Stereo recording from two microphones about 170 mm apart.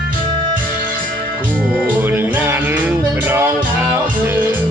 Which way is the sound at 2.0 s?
10° right (ahead or behind).